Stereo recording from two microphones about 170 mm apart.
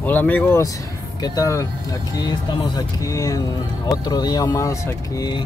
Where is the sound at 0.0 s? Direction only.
10° left (ahead or behind).